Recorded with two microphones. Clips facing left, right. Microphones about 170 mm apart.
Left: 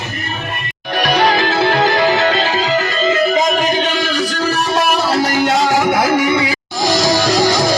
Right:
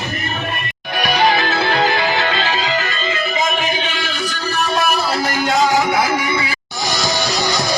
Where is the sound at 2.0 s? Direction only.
55° left (ahead or behind).